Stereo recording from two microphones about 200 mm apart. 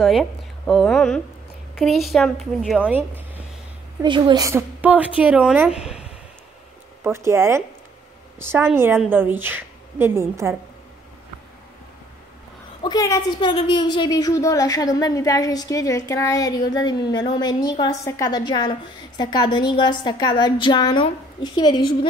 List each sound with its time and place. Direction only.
0.0 s a woman's voice: centre (ahead or behind)
4.0 s a woman's voice: 20° right (ahead or behind)
12.8 s a woman's voice: 20° left (ahead or behind)